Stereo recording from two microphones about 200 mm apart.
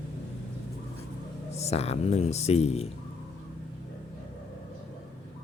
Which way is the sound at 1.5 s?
30° left (ahead or behind).